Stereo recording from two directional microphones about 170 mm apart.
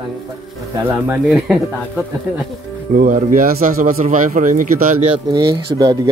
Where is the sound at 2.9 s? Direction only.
50° right (ahead or behind).